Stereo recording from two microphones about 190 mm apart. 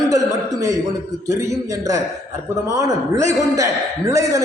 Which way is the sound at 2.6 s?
15° right (ahead or behind).